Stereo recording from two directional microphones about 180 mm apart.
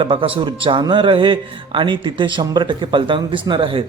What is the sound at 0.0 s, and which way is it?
A man's voice, 30° right (ahead or behind).